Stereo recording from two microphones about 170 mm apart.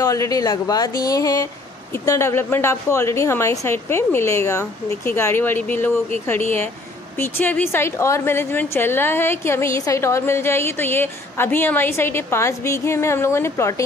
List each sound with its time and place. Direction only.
0.0 s a woman's voice: 20° left (ahead or behind)
7.2 s a woman's voice: 10° left (ahead or behind)